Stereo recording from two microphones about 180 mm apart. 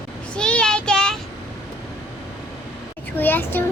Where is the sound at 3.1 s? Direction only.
10° left (ahead or behind).